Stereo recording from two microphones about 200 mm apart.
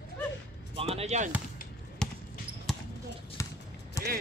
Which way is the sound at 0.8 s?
30° right (ahead or behind).